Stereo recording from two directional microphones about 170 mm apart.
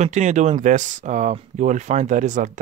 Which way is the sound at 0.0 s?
45° right (ahead or behind).